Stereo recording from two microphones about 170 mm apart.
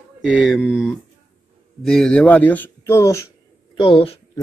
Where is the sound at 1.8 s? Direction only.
5° left (ahead or behind).